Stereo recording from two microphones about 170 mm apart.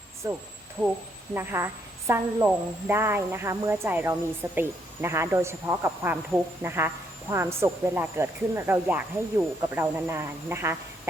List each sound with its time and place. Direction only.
0.2 s speech: 20° right (ahead or behind)
0.8 s a woman's voice: 10° right (ahead or behind)